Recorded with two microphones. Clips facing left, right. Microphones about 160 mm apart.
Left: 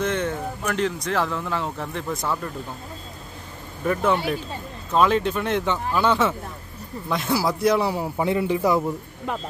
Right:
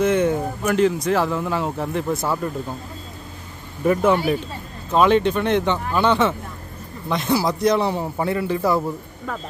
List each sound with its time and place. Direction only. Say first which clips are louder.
0.0 s speech: right 6 dB; 10° right (ahead or behind)
3.8 s a man's voice: right 4 dB; 5° right (ahead or behind)
8.3 s a man's voice: even; 20° left (ahead or behind)